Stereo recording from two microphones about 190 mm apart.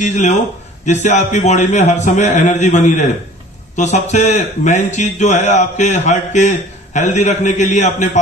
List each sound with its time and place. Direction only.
0.0 s a man's voice: 40° left (ahead or behind)